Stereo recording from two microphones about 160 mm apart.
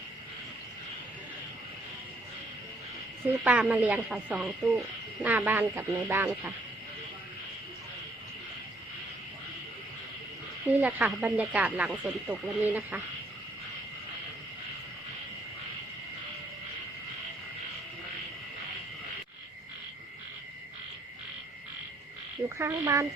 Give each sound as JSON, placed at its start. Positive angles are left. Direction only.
{"t": 3.4, "sound": "speech", "side_deg": -10}
{"t": 10.7, "sound": "speech", "side_deg": -10}
{"t": 22.4, "sound": "speech", "side_deg": -15}